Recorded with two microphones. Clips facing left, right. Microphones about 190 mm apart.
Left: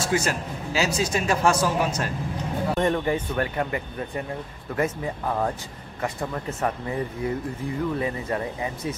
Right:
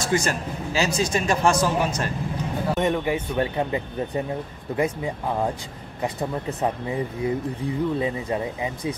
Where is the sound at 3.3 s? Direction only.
20° right (ahead or behind).